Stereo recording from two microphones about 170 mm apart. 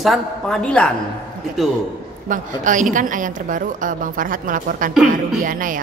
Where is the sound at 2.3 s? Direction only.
50° right (ahead or behind).